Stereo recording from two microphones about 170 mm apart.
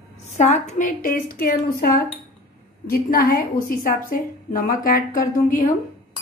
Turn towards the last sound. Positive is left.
turn(degrees=50)  # may be behind; listen again after turning